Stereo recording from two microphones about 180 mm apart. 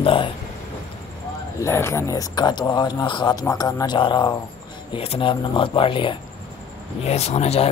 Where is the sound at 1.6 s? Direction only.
15° left (ahead or behind).